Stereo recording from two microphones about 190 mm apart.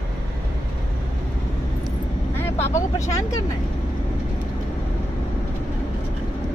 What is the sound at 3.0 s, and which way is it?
Speech, 15° left (ahead or behind).